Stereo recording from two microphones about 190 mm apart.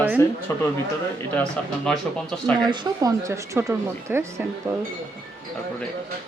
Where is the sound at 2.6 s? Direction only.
15° right (ahead or behind).